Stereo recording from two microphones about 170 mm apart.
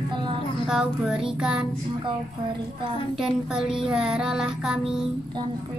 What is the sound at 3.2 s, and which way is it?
Music, 5° right (ahead or behind).